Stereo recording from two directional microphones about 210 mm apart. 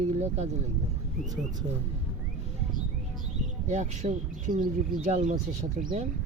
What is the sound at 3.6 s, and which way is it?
Speech, 35° right (ahead or behind).